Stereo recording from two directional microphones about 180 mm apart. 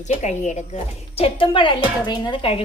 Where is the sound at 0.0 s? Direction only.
40° left (ahead or behind).